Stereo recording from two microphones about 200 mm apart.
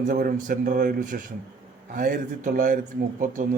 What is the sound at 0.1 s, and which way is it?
A man's voice, 45° right (ahead or behind).